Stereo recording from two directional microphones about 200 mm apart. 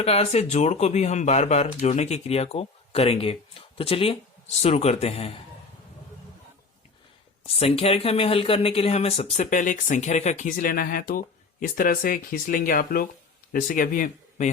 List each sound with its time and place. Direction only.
0.0 s speech: 30° left (ahead or behind)
7.6 s speech: 30° left (ahead or behind)